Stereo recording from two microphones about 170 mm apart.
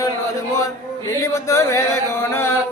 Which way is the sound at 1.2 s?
20° left (ahead or behind).